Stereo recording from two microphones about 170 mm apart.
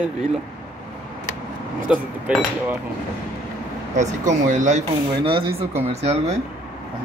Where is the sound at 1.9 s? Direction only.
Centre (ahead or behind).